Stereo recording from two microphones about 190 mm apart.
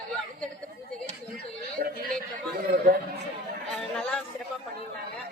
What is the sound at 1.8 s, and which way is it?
Chatter, 55° right (ahead or behind).